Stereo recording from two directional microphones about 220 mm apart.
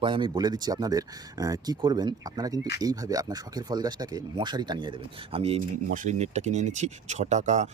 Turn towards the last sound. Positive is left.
turn(degrees=-30)  # may be behind; listen again after turning